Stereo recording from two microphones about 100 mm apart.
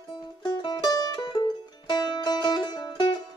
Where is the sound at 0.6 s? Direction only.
50° left (ahead or behind).